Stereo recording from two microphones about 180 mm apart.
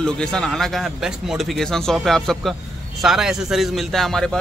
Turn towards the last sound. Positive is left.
turn(degrees=0)  # may be behind; listen again after turning